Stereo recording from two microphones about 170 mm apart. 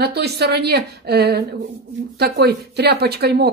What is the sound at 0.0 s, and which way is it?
Speech, 75° right (ahead or behind).